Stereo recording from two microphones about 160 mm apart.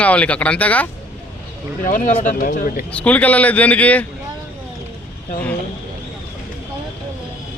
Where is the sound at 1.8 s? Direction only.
55° left (ahead or behind).